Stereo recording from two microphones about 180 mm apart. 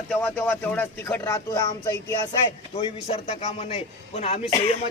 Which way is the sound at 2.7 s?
35° left (ahead or behind).